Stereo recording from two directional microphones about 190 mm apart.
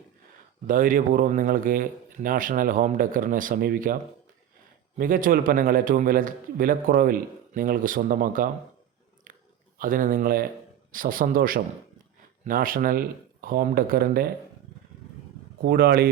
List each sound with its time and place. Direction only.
0.7 s a man's voice: 45° right (ahead or behind)
4.9 s a man's voice: 45° right (ahead or behind)
9.3 s chewing: 45° right (ahead or behind)
9.7 s a man's voice: 45° right (ahead or behind)
15.6 s a man's voice: 55° right (ahead or behind)